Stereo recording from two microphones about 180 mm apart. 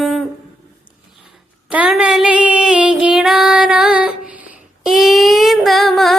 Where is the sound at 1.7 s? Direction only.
5° right (ahead or behind).